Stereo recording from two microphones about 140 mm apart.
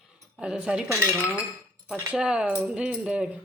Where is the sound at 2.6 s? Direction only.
5° right (ahead or behind).